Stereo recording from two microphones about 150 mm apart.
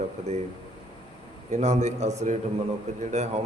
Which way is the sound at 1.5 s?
50° right (ahead or behind).